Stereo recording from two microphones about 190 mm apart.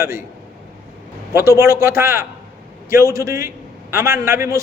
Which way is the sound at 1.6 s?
15° right (ahead or behind).